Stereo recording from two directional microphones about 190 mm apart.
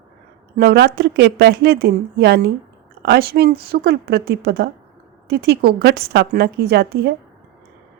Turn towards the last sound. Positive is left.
turn(degrees=-60)  # may be behind; listen again after turning